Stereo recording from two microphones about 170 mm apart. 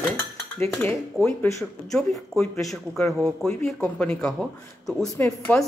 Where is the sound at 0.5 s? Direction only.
10° left (ahead or behind).